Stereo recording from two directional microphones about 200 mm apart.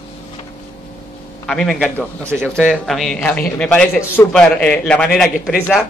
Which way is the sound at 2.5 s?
Centre (ahead or behind).